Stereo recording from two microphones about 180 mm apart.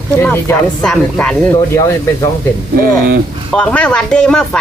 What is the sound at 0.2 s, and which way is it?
Speech, 10° left (ahead or behind).